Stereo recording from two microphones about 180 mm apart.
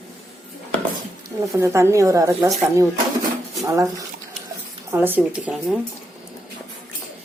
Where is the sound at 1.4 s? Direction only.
15° right (ahead or behind).